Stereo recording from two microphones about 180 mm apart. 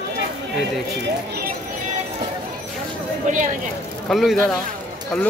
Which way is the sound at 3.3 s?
45° right (ahead or behind).